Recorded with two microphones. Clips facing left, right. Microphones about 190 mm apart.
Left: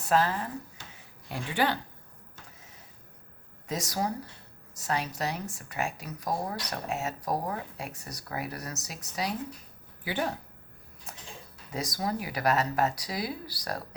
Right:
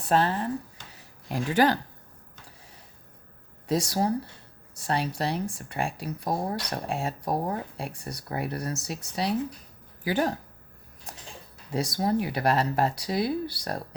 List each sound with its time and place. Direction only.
0.0 s speech: 30° right (ahead or behind)
0.9 s a sound: 40° right (ahead or behind)
3.7 s speech: 30° right (ahead or behind)
10.0 s speech: 40° right (ahead or behind)
11.7 s speech: 30° right (ahead or behind)